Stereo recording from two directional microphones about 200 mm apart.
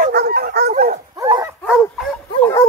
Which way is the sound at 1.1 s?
20° right (ahead or behind).